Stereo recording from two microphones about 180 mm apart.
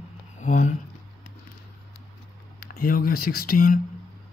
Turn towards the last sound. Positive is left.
turn(degrees=50)  # may be behind; listen again after turning